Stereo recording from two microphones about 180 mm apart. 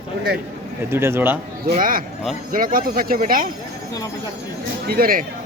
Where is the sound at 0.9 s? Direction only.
15° right (ahead or behind).